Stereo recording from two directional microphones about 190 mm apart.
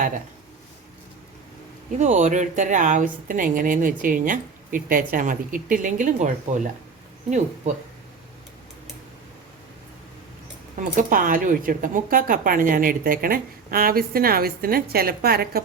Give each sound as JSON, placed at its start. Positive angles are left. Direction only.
{"t": 2.0, "sound": "speech", "side_deg": -40}
{"t": 10.8, "sound": "speech", "side_deg": -45}